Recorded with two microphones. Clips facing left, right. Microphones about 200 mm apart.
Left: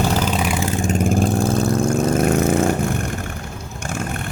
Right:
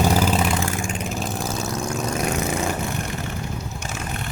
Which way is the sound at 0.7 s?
35° left (ahead or behind).